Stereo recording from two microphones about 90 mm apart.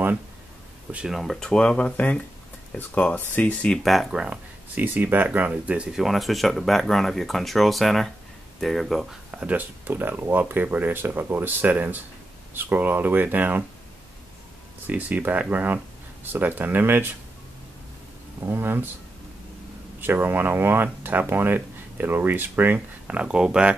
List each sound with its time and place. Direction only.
0.9 s speech: 5° right (ahead or behind); by 3.7 s 20° left (ahead or behind)
3.7 s speech: centre (ahead or behind)
4.7 s speech: 20° right (ahead or behind)
6.0 s speech: centre (ahead or behind)
9.3 s speech: 15° right (ahead or behind)
14.9 s speech: 20° right (ahead or behind)
18.4 s speech: 25° right (ahead or behind)
20.0 s speech: 25° right (ahead or behind)